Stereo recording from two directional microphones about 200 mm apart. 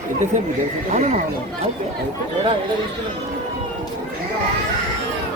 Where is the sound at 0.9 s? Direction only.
35° right (ahead or behind).